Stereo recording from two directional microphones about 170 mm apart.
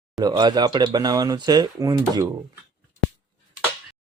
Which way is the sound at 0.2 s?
25° right (ahead or behind).